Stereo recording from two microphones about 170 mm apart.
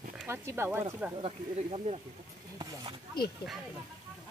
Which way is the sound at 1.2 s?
35° right (ahead or behind).